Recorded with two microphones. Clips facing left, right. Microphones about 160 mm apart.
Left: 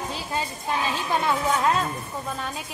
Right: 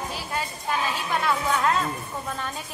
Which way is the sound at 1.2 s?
20° left (ahead or behind).